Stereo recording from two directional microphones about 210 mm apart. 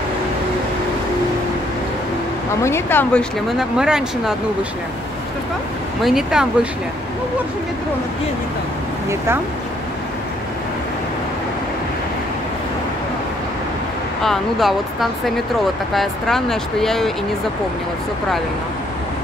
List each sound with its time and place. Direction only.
2.6 s speech: 10° left (ahead or behind)
6.0 s speech: centre (ahead or behind)
14.2 s speech: centre (ahead or behind)